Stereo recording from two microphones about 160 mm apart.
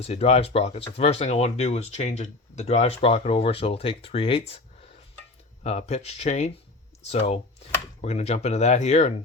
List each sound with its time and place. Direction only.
0.0 s speech: 40° left (ahead or behind)